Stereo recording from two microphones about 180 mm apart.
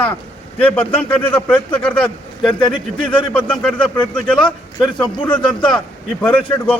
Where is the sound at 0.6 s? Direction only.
10° left (ahead or behind).